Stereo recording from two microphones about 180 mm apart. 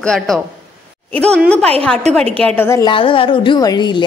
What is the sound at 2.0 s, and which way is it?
Speech, 35° right (ahead or behind).